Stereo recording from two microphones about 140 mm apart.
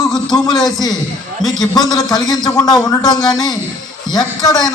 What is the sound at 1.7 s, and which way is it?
A man's voice, 30° left (ahead or behind).